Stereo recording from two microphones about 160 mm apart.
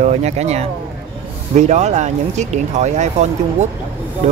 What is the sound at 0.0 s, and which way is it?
Speech, 45° right (ahead or behind).